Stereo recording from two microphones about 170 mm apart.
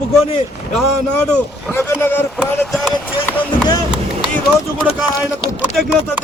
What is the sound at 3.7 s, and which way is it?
Run, 25° left (ahead or behind).